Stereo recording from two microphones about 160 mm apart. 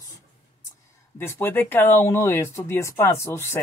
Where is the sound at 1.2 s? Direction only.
15° left (ahead or behind).